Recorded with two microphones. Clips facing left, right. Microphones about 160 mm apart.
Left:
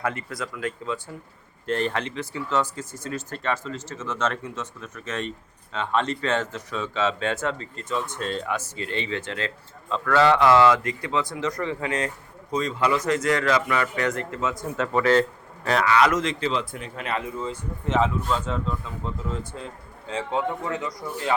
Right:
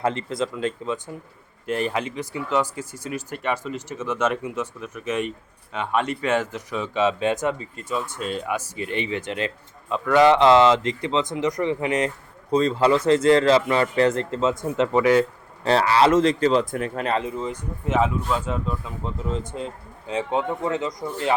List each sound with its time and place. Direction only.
0.0 s speech: 25° right (ahead or behind)
1.6 s speech: 10° right (ahead or behind)
12.5 s speech: 30° right (ahead or behind); by 15.3 s 15° right (ahead or behind)
15.6 s speech: 30° right (ahead or behind); by 17.1 s 50° right (ahead or behind)
17.1 s speech: 25° right (ahead or behind)